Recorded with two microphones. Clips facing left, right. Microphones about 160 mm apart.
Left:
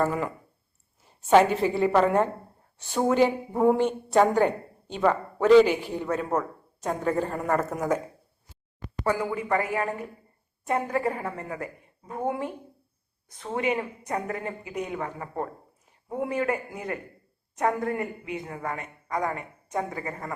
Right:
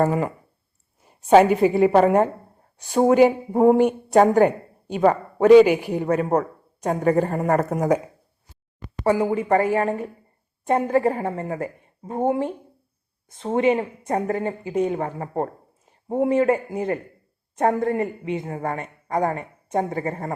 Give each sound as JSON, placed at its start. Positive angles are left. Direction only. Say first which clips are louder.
{"t": 0.0, "sound": "a woman's voice", "louder": "right 5 dB", "side_deg": -50}
{"t": 1.4, "sound": "a woman's voice", "louder": "right 5 dB", "side_deg": -10}
{"t": 1.7, "sound": "a woman's voice", "louder": "right 4 dB", "side_deg": -50}
{"t": 3.2, "sound": "a woman's voice", "louder": "right 6 dB", "side_deg": -45}
{"t": 3.7, "sound": "a woman's voice", "louder": "right 6 dB", "side_deg": -10}
{"t": 4.1, "sound": "a woman's voice", "louder": "right 5 dB", "side_deg": -50}
{"t": 5.5, "sound": "a woman's voice", "louder": "right 5 dB", "side_deg": -10}
{"t": 6.0, "sound": "a woman's voice", "louder": "right 6 dB", "side_deg": -60}
{"t": 9.0, "sound": "a man's voice", "louder": "right 7 dB", "side_deg": -25}